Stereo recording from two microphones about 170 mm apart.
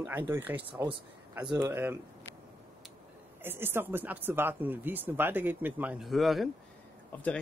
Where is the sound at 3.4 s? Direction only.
10° right (ahead or behind).